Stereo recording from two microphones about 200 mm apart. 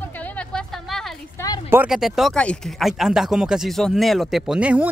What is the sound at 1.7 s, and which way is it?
Speech, 5° right (ahead or behind).